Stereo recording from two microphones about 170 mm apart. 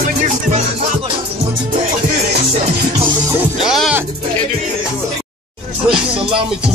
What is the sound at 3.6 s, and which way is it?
Music, centre (ahead or behind).